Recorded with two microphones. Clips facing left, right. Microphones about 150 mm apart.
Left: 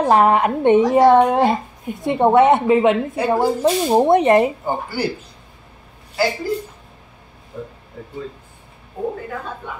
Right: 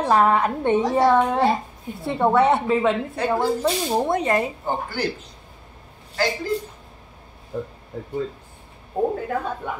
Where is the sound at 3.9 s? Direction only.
25° left (ahead or behind).